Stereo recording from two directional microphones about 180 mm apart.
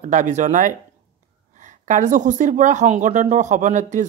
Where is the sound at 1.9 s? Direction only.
45° right (ahead or behind).